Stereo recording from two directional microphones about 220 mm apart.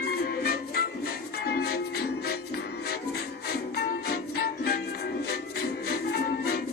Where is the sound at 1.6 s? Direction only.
45° left (ahead or behind).